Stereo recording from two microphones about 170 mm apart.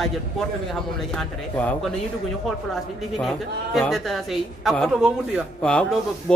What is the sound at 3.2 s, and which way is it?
A man's voice, centre (ahead or behind).